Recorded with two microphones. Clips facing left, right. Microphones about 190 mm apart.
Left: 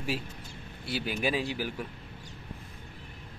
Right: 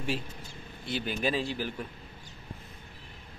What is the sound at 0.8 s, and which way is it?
Speech, 5° left (ahead or behind).